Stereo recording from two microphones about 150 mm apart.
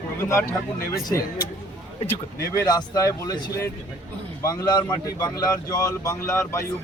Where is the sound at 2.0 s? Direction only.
25° left (ahead or behind).